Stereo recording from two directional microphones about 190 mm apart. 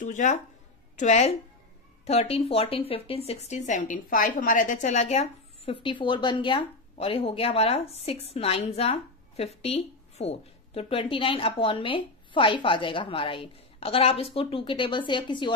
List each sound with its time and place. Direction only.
0.0 s speech: 40° left (ahead or behind); by 15.5 s 25° left (ahead or behind)